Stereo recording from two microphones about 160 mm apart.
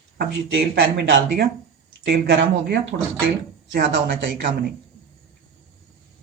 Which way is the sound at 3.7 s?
65° right (ahead or behind).